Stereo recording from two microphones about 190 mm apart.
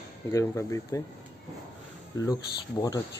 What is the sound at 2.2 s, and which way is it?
Speech, 20° left (ahead or behind).